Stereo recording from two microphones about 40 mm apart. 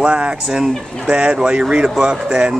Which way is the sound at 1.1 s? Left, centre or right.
Right.